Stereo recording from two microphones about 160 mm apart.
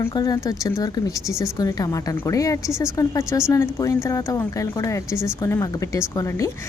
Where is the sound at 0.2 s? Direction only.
20° left (ahead or behind).